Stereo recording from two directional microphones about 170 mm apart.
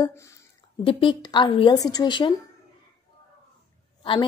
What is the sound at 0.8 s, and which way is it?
A woman's voice, 30° left (ahead or behind).